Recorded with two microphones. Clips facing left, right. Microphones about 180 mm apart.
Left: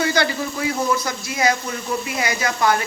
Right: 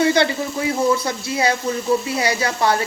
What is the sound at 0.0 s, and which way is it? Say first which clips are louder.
Speech: right 4 dB; 25° right (ahead or behind).